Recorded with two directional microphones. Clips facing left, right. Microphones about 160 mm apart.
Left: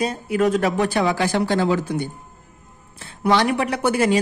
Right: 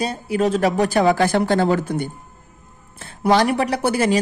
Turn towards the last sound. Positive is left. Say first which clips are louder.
# even
turn(degrees=-35)  # may be behind; listen again after turning